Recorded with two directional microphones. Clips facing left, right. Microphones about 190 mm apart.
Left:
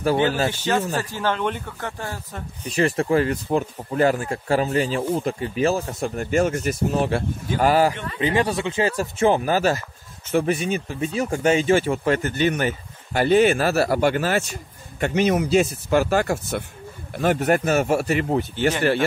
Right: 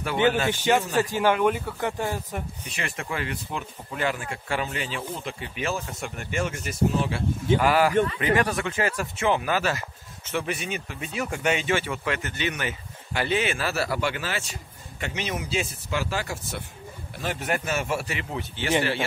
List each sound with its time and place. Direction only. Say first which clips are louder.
0.0 s speech: left 3 dB; 35° left (ahead or behind)
0.5 s speech: even; 15° right (ahead or behind)
2.7 s speech: left 14 dB; 35° left (ahead or behind)
7.5 s speech: left 3 dB; 35° left (ahead or behind)
8.2 s speech: left 2 dB; 25° left (ahead or behind); by 18.7 s 45° left (ahead or behind)